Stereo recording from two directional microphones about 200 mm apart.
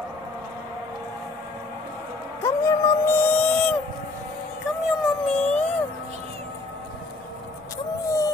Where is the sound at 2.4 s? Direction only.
15° left (ahead or behind).